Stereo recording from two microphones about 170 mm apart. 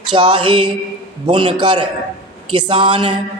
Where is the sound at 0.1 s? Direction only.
30° right (ahead or behind).